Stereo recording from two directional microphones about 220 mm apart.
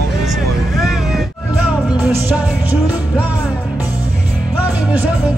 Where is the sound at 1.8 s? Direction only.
10° right (ahead or behind).